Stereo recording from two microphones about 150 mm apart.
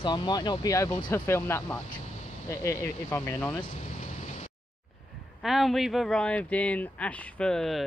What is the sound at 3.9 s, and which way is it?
Vehicle, 55° left (ahead or behind).